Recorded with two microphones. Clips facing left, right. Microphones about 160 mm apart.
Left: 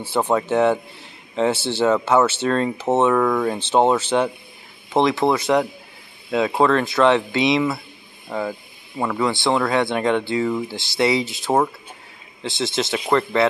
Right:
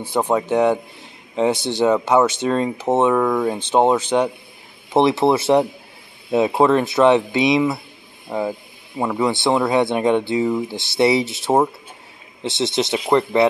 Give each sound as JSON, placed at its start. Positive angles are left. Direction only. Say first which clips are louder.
{"t": 0.1, "sound": "a man's voice", "louder": "right 1 dB", "side_deg": -10}
{"t": 4.9, "sound": "speech", "louder": "right 2 dB", "side_deg": -25}